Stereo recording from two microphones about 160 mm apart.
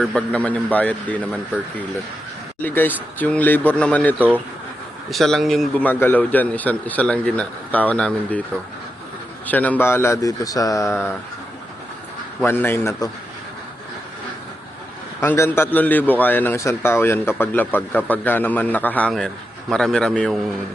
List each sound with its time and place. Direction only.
0.0 s a man's voice: centre (ahead or behind)
2.6 s a man's voice: 10° left (ahead or behind)
5.1 s a man's voice: centre (ahead or behind)
9.5 s a man's voice: 10° left (ahead or behind)
12.4 s a man's voice: 15° left (ahead or behind)
15.2 s a man's voice: 15° left (ahead or behind)